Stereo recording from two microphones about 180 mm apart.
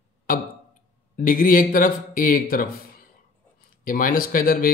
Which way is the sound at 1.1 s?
50° left (ahead or behind).